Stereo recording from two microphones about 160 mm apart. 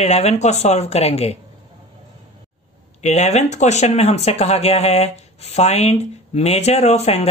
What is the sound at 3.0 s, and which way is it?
Speech, 45° left (ahead or behind).